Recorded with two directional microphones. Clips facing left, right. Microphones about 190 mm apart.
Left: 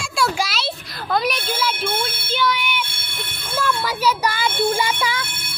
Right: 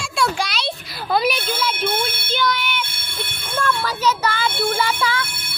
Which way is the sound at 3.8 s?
10° left (ahead or behind).